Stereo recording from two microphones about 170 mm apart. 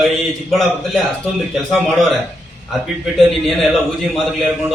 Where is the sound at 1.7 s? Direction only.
Centre (ahead or behind).